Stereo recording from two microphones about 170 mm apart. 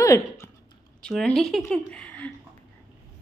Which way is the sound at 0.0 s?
15° left (ahead or behind).